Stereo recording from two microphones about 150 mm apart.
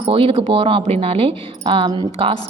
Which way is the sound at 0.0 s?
40° right (ahead or behind).